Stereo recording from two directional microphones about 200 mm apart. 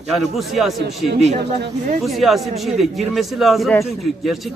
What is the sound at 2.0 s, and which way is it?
A man's voice, centre (ahead or behind).